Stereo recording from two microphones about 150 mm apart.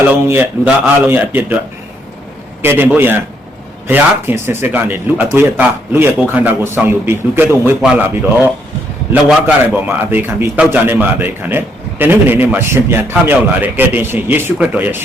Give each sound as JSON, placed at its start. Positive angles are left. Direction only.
{"t": 0.0, "sound": "a man's voice", "side_deg": -15}
{"t": 2.6, "sound": "a man's voice", "side_deg": -15}
{"t": 9.7, "sound": "a man's voice", "side_deg": -10}